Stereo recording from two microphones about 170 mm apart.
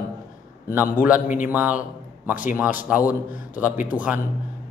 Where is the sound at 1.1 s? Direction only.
50° left (ahead or behind).